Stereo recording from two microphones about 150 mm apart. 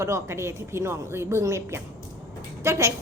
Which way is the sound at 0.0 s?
20° right (ahead or behind).